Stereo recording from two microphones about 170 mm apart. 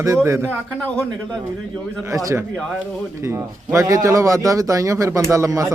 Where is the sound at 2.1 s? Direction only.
20° right (ahead or behind).